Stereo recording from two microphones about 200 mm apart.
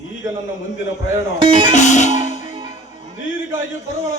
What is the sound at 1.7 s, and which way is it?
Music, 35° left (ahead or behind).